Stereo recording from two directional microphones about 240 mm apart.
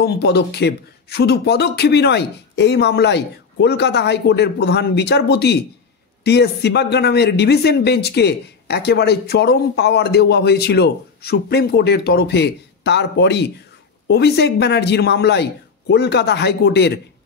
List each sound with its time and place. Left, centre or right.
0.0 s speech: left